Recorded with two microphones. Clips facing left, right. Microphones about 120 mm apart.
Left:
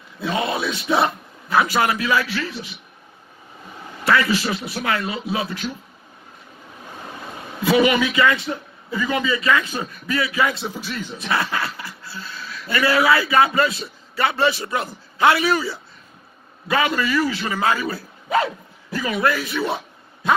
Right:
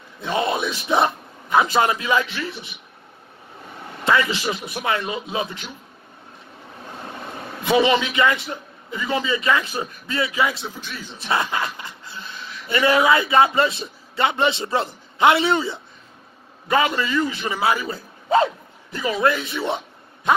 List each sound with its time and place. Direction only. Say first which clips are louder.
0.3 s a man's voice: right 1 dB; 20° right (ahead or behind)
4.0 s a man's voice: left 1 dB; 20° right (ahead or behind)
7.6 s a man's voice: left 1 dB; 25° right (ahead or behind)
10.5 s speech: left 4 dB; centre (ahead or behind)
11.1 s a man's voice: right 1 dB; 25° right (ahead or behind)
17.8 s dog: right 1 dB; 25° right (ahead or behind)